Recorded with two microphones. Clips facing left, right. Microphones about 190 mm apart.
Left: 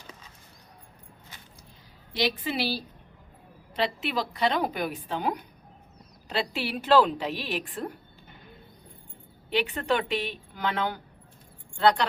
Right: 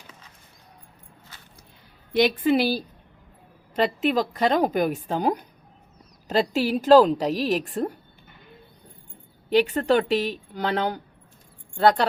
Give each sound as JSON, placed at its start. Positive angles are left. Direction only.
{"t": 2.1, "sound": "a woman's voice", "side_deg": -55}
{"t": 9.5, "sound": "a woman's voice", "side_deg": -40}